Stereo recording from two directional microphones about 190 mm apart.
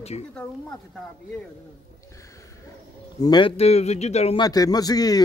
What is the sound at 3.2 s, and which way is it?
Speech, 25° left (ahead or behind).